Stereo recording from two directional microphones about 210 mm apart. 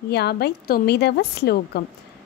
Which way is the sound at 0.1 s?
50° left (ahead or behind).